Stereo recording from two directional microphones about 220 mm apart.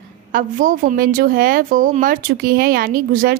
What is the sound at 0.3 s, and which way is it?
A woman's voice, 40° right (ahead or behind).